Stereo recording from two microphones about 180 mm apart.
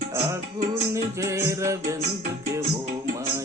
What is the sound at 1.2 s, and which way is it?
Music, 15° right (ahead or behind).